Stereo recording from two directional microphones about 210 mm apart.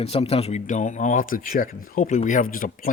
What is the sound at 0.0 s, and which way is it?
Speech, 30° left (ahead or behind).